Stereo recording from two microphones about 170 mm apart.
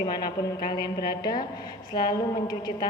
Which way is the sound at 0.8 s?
65° left (ahead or behind).